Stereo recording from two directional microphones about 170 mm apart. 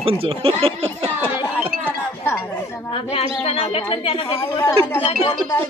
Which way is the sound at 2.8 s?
35° left (ahead or behind).